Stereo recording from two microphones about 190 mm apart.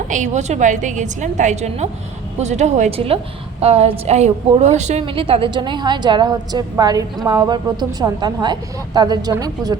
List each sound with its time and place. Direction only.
0.1 s a woman's voice: 40° right (ahead or behind); by 9.7 s 20° right (ahead or behind)